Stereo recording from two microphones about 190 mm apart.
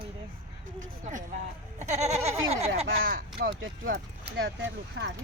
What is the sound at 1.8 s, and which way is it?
Goat, 35° right (ahead or behind).